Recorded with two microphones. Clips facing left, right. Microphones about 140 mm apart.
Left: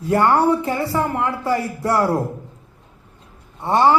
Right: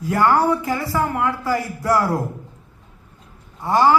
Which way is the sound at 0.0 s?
30° left (ahead or behind).